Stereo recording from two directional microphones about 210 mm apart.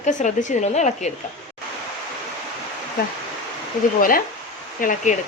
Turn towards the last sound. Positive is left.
turn(degrees=35)  # may be behind; listen again after turning